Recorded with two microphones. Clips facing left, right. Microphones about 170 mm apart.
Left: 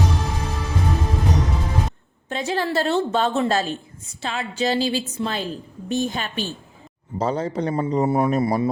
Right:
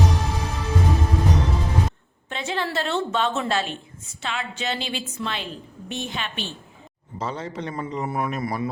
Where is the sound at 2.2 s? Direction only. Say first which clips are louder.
Left 4 dB; 40° left (ahead or behind).